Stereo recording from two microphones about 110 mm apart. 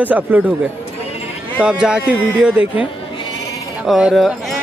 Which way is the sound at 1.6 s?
5° right (ahead or behind).